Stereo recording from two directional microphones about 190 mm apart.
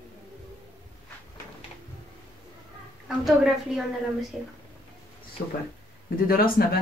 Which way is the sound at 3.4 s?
Centre (ahead or behind).